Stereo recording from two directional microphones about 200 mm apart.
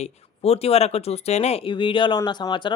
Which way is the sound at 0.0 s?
30° left (ahead or behind).